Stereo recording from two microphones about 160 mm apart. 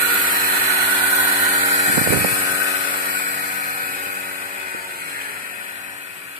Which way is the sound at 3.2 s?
55° right (ahead or behind).